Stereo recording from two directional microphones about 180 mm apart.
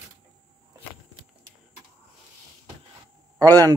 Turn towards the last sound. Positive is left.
turn(degrees=-20)  # may be behind; listen again after turning